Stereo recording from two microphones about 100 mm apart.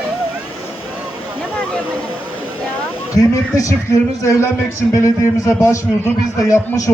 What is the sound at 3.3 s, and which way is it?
A man's voice, 30° left (ahead or behind).